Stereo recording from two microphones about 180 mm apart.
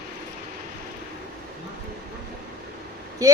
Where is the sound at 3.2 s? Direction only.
20° right (ahead or behind).